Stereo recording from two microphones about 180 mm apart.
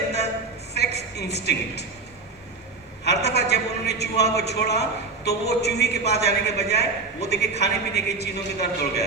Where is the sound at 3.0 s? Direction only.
70° left (ahead or behind).